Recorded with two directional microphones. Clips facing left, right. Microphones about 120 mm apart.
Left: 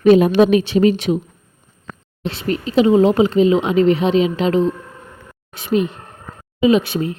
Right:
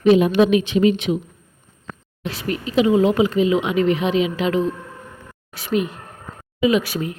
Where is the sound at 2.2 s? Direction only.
30° left (ahead or behind).